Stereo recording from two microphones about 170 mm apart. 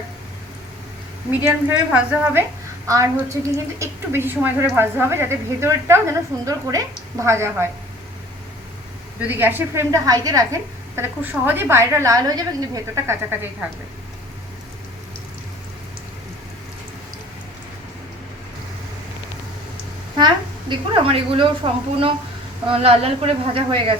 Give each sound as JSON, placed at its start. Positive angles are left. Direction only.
{"t": 1.5, "sound": "a woman's voice", "side_deg": -10}
{"t": 9.2, "sound": "a woman's voice", "side_deg": -10}
{"t": 20.1, "sound": "a woman's voice", "side_deg": -25}